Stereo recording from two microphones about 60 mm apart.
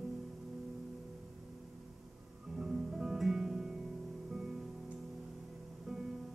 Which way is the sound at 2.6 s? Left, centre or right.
Centre.